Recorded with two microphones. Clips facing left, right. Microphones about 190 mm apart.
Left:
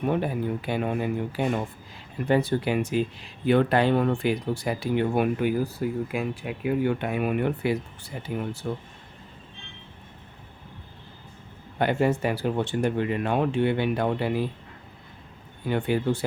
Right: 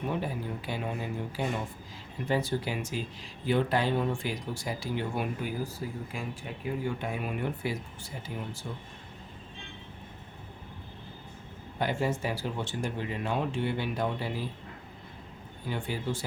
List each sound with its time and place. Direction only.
0.1 s speech: 60° left (ahead or behind)
11.8 s speech: 60° left (ahead or behind)
15.6 s speech: 60° left (ahead or behind)